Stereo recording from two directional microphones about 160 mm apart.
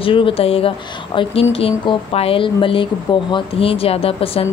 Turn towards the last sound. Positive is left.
turn(degrees=35)  # may be behind; listen again after turning